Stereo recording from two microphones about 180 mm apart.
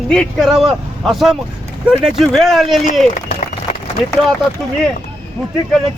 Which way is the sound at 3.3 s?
35° left (ahead or behind).